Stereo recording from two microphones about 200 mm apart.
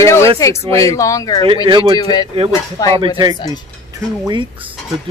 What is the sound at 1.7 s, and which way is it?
Speech, 25° right (ahead or behind).